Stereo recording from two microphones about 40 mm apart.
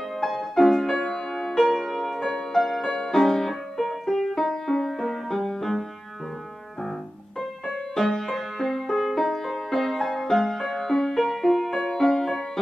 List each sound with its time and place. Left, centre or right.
0.2 s music: centre
7.3 s music: centre